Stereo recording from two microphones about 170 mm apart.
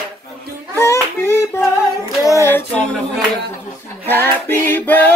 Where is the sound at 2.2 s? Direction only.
15° left (ahead or behind).